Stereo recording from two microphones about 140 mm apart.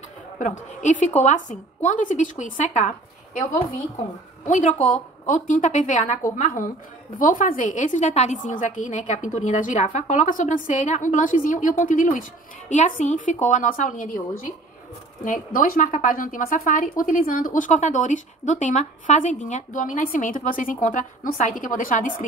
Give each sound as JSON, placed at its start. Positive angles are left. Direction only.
{"t": 0.4, "sound": "a woman's voice", "side_deg": 60}
{"t": 4.5, "sound": "a woman's voice", "side_deg": 60}